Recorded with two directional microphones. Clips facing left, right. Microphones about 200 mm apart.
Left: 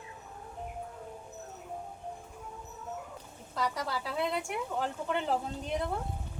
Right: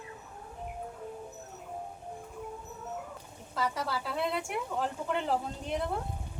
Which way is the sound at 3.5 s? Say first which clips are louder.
Right 1 dB; centre (ahead or behind).